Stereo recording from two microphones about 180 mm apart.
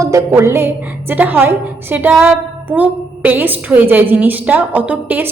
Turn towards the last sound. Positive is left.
turn(degrees=-10)  # may be behind; listen again after turning